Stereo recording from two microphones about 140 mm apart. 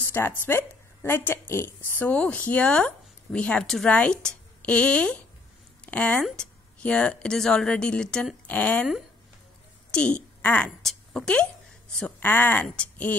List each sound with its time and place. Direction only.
0.1 s a woman's voice: 15° left (ahead or behind)
9.8 s a woman's voice: 5° left (ahead or behind)